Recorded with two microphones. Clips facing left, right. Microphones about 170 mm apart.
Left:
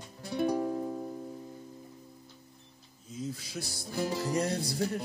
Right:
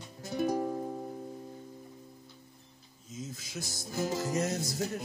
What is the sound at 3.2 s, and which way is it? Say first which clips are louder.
Music: left 4 dB; 35° left (ahead or behind).